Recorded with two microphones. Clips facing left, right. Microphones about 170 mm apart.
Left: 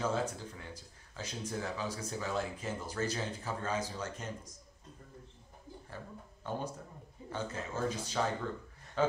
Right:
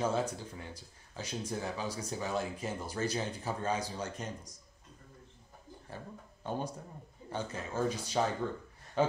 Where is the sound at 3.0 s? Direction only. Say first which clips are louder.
Right 2 dB; 25° right (ahead or behind).